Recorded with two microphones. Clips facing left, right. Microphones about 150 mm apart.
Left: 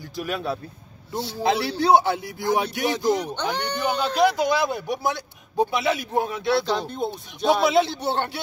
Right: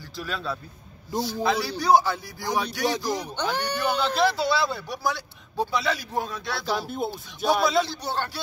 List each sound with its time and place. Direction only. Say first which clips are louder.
0.1 s a man's voice: left 4 dB; 15° left (ahead or behind)
6.6 s speech: left 2 dB; 5° right (ahead or behind)
7.6 s a man's voice: left 4 dB; 20° left (ahead or behind)